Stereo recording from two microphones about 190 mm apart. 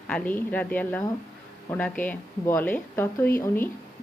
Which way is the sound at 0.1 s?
10° left (ahead or behind).